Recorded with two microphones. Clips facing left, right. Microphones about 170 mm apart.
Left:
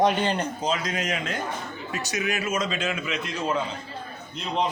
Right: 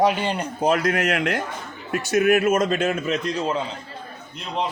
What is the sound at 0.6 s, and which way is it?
Speech, 65° right (ahead or behind).